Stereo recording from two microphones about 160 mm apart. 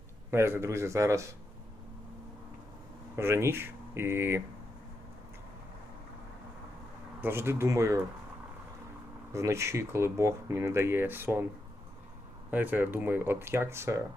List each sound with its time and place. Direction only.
0.3 s speech: 15° right (ahead or behind)
3.2 s speech: 15° right (ahead or behind)
7.2 s speech: 15° right (ahead or behind)
9.3 s speech: 20° right (ahead or behind)
12.5 s speech: 10° right (ahead or behind)